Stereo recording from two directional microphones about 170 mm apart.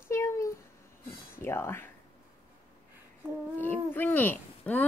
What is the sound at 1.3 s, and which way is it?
Speech, 15° left (ahead or behind).